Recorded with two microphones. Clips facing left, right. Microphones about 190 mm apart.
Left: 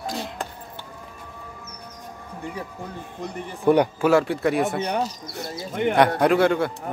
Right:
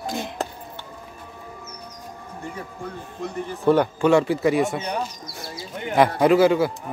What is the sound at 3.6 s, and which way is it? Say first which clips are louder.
Speech: even; 15° left (ahead or behind).